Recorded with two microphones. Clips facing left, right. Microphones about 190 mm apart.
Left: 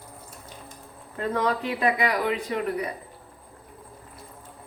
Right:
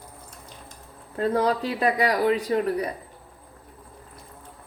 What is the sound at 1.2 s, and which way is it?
A woman's voice, 35° right (ahead or behind).